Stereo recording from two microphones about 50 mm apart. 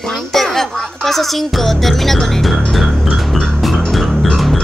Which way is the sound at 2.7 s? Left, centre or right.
Centre.